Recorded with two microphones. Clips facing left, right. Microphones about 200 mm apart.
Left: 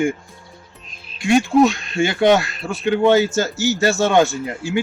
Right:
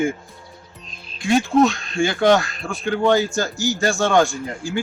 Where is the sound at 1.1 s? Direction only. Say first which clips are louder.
Left 2 dB; centre (ahead or behind).